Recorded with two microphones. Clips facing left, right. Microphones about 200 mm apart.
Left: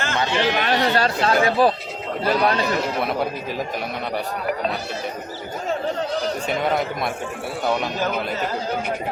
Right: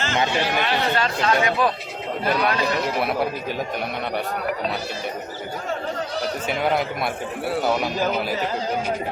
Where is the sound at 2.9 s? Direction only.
Centre (ahead or behind).